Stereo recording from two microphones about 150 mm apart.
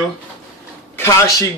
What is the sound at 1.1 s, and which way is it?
Speech, 20° left (ahead or behind).